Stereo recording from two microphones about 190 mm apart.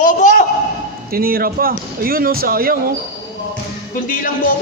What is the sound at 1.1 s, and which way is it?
Speech, 50° right (ahead or behind).